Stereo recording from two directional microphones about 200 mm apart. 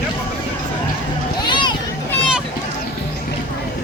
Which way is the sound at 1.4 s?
25° left (ahead or behind).